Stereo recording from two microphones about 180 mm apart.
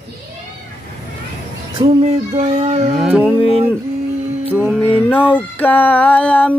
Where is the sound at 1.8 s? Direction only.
35° right (ahead or behind).